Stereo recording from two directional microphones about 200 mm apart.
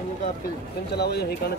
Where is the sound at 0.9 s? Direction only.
55° left (ahead or behind).